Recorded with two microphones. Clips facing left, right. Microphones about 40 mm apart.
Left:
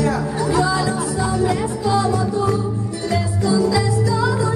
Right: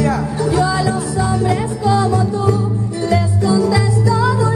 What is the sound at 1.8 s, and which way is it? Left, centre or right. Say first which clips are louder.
Music: right 3 dB; centre.